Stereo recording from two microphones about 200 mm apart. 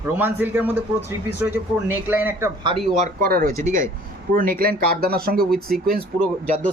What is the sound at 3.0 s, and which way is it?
Speech, 45° right (ahead or behind).